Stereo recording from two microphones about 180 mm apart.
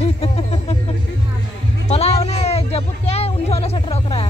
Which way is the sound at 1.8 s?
35° left (ahead or behind).